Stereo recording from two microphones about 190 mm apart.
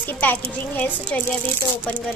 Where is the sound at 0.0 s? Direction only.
10° left (ahead or behind).